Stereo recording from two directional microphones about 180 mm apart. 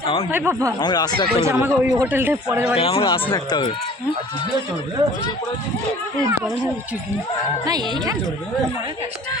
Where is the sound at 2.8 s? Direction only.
30° left (ahead or behind).